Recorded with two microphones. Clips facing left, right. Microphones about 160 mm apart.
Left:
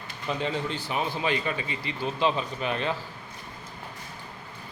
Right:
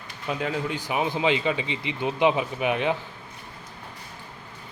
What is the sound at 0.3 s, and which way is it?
Speech, 5° right (ahead or behind).